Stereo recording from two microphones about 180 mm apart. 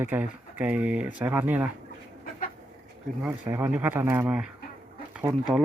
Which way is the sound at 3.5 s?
10° right (ahead or behind).